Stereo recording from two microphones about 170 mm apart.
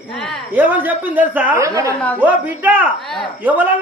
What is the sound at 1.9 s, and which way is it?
Speech, 10° left (ahead or behind).